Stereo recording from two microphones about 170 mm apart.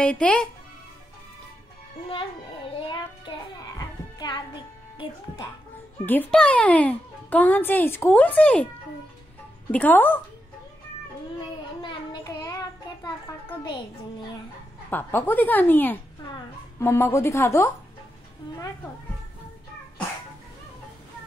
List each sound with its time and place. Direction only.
0.0 s speech: 5° left (ahead or behind)
2.9 s music: 25° left (ahead or behind)
6.0 s a child's voice: 10° left (ahead or behind)
9.7 s a child's voice: 10° left (ahead or behind)
11.8 s child singing: 25° left (ahead or behind)
14.9 s a child's voice: 10° left (ahead or behind)